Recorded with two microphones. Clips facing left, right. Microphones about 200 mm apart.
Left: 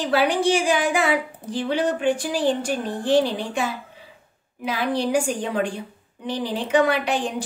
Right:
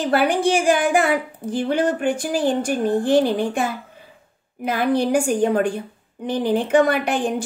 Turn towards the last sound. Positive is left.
turn(degrees=-50)  # may be behind; listen again after turning